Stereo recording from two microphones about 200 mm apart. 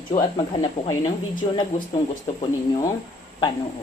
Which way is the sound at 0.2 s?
20° left (ahead or behind).